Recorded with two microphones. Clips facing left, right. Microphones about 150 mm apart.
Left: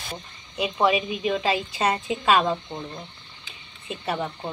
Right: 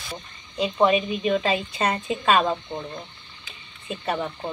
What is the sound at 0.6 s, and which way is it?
A woman's voice, 10° left (ahead or behind).